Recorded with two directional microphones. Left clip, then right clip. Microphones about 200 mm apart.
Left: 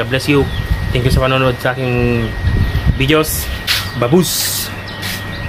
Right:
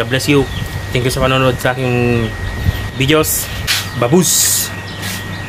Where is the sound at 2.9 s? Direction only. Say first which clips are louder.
Right 1 dB; 5° right (ahead or behind).